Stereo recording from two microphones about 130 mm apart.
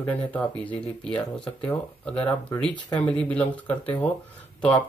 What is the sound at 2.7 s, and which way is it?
Speech, 35° left (ahead or behind).